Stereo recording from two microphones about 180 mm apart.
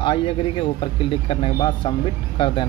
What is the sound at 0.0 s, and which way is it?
Speech, 30° left (ahead or behind).